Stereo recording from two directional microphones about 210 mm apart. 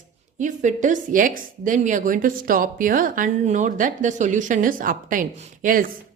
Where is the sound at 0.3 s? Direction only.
35° right (ahead or behind).